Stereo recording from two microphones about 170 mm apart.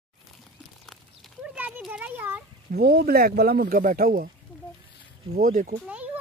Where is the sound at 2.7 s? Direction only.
65° right (ahead or behind).